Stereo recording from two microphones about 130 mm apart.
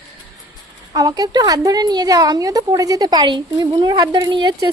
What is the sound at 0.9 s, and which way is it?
A woman's voice, 30° right (ahead or behind).